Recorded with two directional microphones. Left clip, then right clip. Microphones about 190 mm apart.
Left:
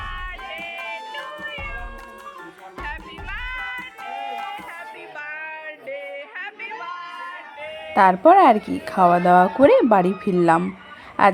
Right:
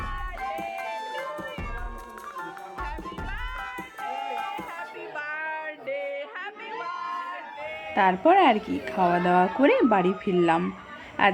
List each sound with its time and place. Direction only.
0.0 s music: centre (ahead or behind)
2.8 s music: centre (ahead or behind)
5.1 s a sound: 5° right (ahead or behind)
7.9 s a woman's voice: 25° left (ahead or behind)